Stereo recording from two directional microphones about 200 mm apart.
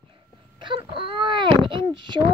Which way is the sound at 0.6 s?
25° right (ahead or behind).